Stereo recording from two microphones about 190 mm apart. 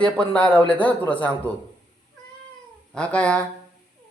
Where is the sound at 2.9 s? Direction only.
5° left (ahead or behind).